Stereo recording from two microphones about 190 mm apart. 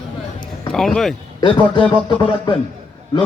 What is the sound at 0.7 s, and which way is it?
Speech, centre (ahead or behind).